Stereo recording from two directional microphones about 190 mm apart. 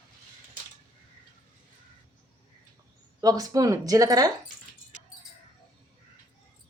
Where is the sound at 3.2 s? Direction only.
20° right (ahead or behind).